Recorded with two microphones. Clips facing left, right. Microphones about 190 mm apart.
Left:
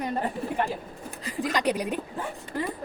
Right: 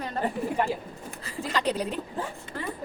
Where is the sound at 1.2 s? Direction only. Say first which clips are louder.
Left 6 dB; 15° left (ahead or behind).